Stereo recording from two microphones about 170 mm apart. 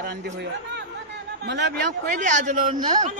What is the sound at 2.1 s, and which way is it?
Speech, 50° right (ahead or behind).